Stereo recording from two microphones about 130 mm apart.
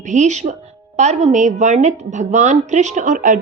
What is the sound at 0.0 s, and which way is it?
A woman's voice, 65° right (ahead or behind).